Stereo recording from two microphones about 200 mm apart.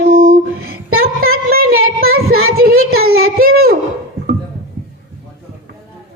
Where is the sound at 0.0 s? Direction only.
45° right (ahead or behind).